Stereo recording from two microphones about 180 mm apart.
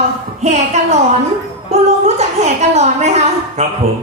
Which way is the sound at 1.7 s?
40° right (ahead or behind).